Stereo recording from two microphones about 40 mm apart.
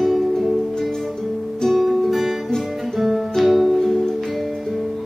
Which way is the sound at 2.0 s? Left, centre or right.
Centre.